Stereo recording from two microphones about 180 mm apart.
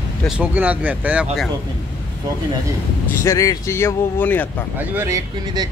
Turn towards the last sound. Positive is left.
turn(degrees=-20)  # may be behind; listen again after turning